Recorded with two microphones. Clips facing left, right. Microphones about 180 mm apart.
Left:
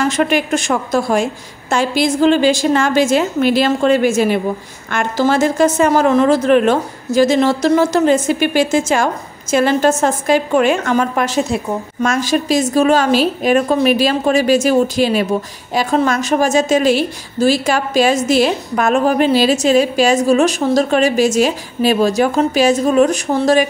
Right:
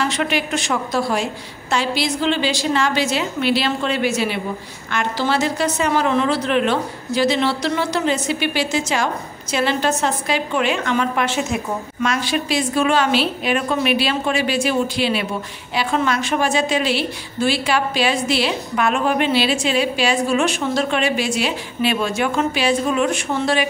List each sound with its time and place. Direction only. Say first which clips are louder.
0.0 s a woman's voice: left 6 dB; 45° left (ahead or behind)